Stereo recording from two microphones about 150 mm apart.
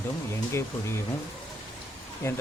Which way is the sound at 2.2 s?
15° left (ahead or behind).